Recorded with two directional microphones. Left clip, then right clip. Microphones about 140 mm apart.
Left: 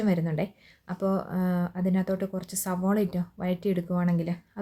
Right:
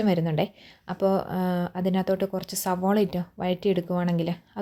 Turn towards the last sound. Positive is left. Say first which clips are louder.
# right 4 dB
turn(degrees=-25)  # may be behind; listen again after turning